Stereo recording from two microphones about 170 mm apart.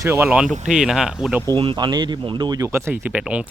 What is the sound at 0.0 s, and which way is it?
Speech, 15° right (ahead or behind).